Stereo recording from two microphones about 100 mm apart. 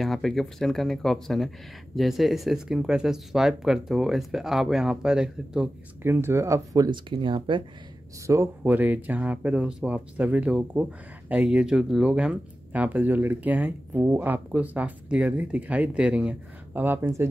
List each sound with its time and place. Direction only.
0.0 s speech: centre (ahead or behind)
6.0 s speech: 25° right (ahead or behind)
6.9 s speech: 55° right (ahead or behind)
8.3 s speech: 30° right (ahead or behind)
8.6 s speech: 15° right (ahead or behind)